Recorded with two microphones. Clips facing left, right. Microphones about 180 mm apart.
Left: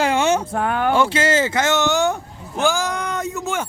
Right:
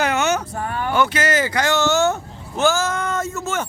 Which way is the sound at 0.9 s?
25° left (ahead or behind).